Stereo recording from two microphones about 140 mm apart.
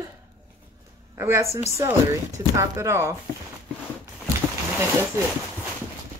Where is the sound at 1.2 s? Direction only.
20° right (ahead or behind).